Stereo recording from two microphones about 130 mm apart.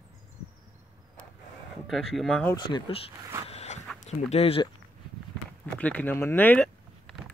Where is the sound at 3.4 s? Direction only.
55° left (ahead or behind).